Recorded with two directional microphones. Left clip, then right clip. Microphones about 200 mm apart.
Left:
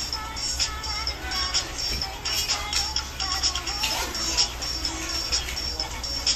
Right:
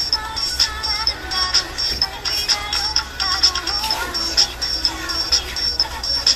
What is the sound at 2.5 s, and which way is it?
Music, 25° right (ahead or behind).